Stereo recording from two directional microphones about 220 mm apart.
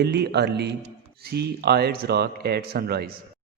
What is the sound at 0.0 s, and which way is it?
A man's voice, 50° right (ahead or behind).